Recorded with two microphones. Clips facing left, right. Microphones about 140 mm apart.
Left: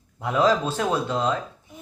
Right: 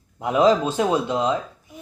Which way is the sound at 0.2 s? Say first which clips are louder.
Right 3 dB; 15° right (ahead or behind).